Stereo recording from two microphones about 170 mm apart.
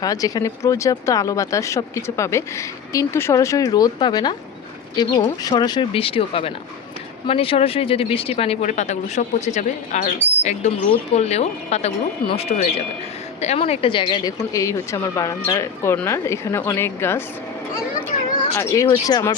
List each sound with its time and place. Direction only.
0.0 s speech: 20° left (ahead or behind); by 10.1 s 45° left (ahead or behind)
10.2 s speech: 10° right (ahead or behind)
11.1 s speech: 40° left (ahead or behind); by 17.2 s 15° left (ahead or behind)
18.5 s speech: 20° left (ahead or behind)